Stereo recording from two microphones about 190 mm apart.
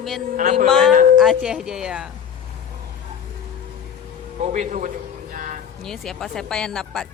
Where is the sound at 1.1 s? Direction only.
Centre (ahead or behind).